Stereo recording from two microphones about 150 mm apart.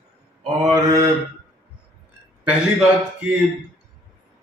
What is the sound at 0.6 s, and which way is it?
Mantra, 25° right (ahead or behind).